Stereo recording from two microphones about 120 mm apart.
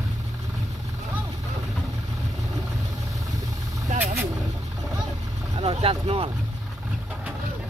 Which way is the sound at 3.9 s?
80° right.